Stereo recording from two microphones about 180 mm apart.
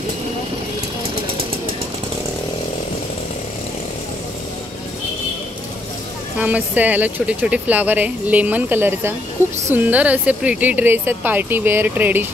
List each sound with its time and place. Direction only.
6.3 s speech: 10° right (ahead or behind)